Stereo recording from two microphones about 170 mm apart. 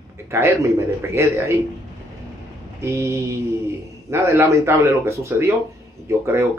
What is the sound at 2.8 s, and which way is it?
Speech, 15° right (ahead or behind).